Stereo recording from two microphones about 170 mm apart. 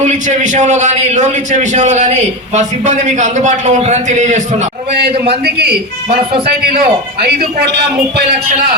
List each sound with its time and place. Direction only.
0.0 s a man's voice: 45° right (ahead or behind)
5.0 s a man's voice: 70° right (ahead or behind)